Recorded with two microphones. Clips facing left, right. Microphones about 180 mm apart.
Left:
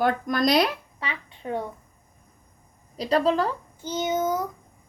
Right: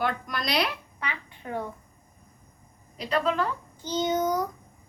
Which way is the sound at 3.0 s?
35° left (ahead or behind).